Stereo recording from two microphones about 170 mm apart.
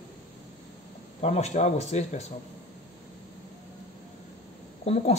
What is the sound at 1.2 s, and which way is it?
Speech, 40° left (ahead or behind).